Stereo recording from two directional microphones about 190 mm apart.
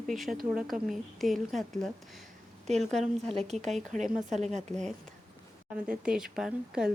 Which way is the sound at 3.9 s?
40° right (ahead or behind).